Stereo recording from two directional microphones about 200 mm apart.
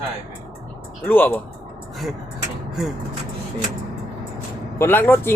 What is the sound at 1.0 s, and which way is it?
Speech, 10° left (ahead or behind).